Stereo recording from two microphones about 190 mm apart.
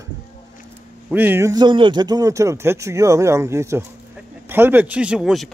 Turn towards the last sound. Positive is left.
turn(degrees=-5)  # may be behind; listen again after turning